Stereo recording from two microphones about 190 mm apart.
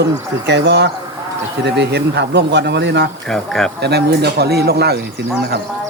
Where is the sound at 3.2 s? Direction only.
Centre (ahead or behind).